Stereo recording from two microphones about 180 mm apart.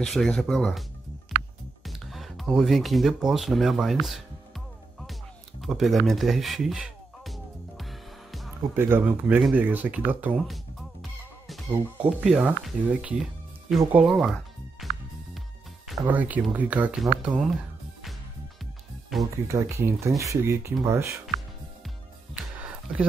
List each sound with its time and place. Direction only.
0.0 s speech: centre (ahead or behind)
1.9 s music: centre (ahead or behind)
5.6 s speech: centre (ahead or behind)
6.0 s music: centre (ahead or behind)
8.7 s speech: 10° right (ahead or behind)
10.3 s music: centre (ahead or behind)
12.0 s speech: 5° right (ahead or behind)
13.9 s music: centre (ahead or behind)
15.9 s speech: 10° right (ahead or behind)
19.3 s speech: 15° right (ahead or behind)